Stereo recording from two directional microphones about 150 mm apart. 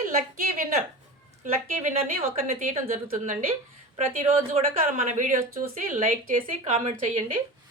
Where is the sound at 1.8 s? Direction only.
55° right (ahead or behind); by 3.5 s 70° right (ahead or behind).